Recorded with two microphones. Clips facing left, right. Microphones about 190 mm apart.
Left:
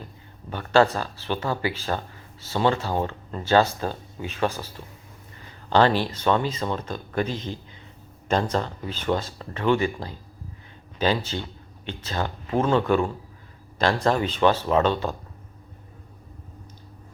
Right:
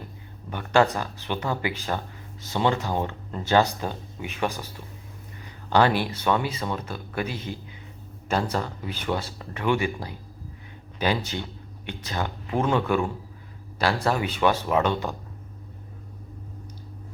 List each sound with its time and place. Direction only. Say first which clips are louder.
0.5 s speech: left 2 dB; 15° right (ahead or behind)
5.7 s speech: left 1 dB; 10° right (ahead or behind)